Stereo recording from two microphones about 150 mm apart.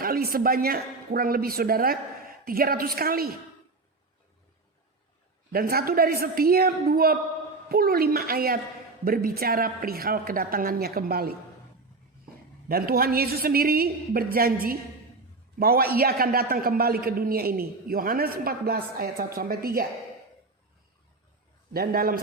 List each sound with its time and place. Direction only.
0.0 s a man's voice: 80° right
5.5 s a woman's voice: 85° right
12.6 s a man's voice: 85° right
15.5 s a man's voice: 90° right
21.7 s a man's voice: 80° right